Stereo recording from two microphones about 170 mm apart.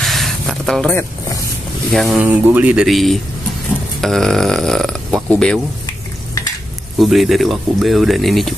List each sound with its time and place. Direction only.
0.0 s a sound: centre (ahead or behind)
1.9 s speech: centre (ahead or behind)
2.1 s speech: 10° right (ahead or behind)
7.0 s speech: centre (ahead or behind)